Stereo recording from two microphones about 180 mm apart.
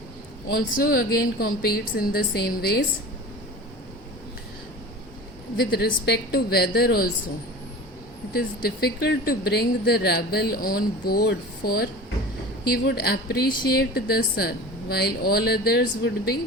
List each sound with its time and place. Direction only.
0.4 s speech: 60° left (ahead or behind)
5.7 s speech: 60° left (ahead or behind)
8.3 s speech: 55° left (ahead or behind)